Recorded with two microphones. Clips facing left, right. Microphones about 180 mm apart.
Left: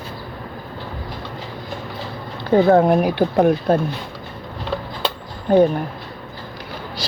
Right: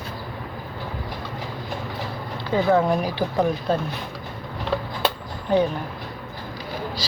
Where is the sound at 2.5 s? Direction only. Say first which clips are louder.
Left 6 dB; 50° left (ahead or behind).